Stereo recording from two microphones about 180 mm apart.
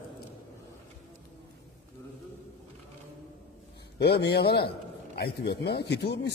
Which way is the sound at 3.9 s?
65° left (ahead or behind).